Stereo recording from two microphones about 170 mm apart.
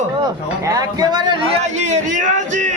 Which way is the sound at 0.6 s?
20° right (ahead or behind).